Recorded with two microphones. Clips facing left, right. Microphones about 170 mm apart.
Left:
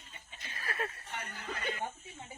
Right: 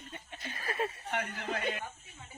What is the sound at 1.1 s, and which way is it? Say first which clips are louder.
Speech: right 7 dB; 75° right (ahead or behind).